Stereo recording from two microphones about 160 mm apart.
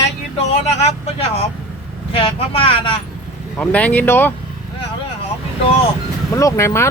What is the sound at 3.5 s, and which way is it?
Speech, 5° left (ahead or behind).